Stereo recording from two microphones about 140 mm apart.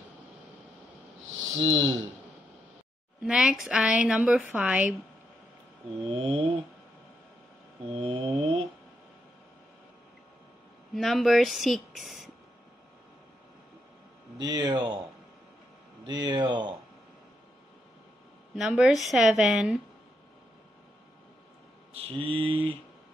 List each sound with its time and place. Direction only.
1.6 s mantra: 40° right (ahead or behind)
3.2 s a woman's voice: 5° right (ahead or behind)
6.0 s mantra: 40° right (ahead or behind)
7.9 s mantra: 40° right (ahead or behind)
11.0 s speech: centre (ahead or behind)
14.4 s mantra: 30° right (ahead or behind)
16.1 s mantra: 30° right (ahead or behind)
18.5 s speech: 5° right (ahead or behind)
21.9 s mantra: 40° right (ahead or behind)